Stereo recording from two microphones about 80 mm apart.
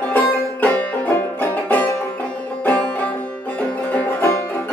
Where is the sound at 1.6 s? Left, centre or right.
Centre.